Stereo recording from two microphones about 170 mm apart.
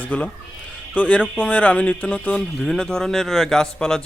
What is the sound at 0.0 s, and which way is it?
Speech, 10° left (ahead or behind).